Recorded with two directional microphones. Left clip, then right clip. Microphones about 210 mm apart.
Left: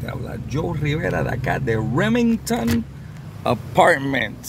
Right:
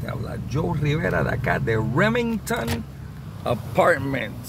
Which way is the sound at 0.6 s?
25° left (ahead or behind).